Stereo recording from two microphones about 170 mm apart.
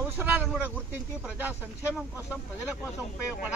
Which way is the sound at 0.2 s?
10° right (ahead or behind).